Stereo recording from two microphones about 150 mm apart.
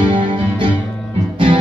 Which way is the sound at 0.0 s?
35° right (ahead or behind).